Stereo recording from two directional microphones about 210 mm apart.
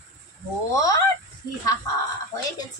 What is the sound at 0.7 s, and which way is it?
Speech, 15° left (ahead or behind).